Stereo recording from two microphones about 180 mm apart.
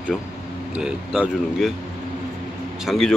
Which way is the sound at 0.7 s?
5° right (ahead or behind).